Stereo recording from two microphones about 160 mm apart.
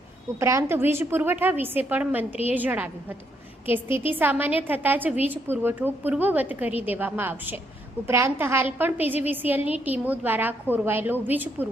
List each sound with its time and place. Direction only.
0.3 s a woman's voice: 20° right (ahead or behind)